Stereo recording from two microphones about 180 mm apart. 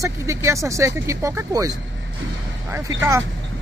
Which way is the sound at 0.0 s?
15° right (ahead or behind).